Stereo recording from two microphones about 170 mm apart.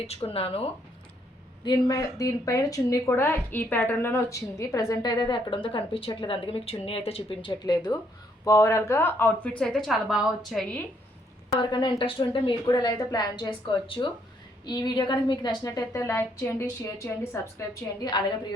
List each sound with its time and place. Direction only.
0.1 s speech: 35° left (ahead or behind)
1.6 s a woman's voice: 25° left (ahead or behind); by 10.8 s 5° left (ahead or behind)
11.6 s speech: 25° left (ahead or behind)